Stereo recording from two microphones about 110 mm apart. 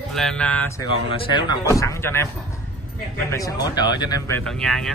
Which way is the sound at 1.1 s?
50° left (ahead or behind).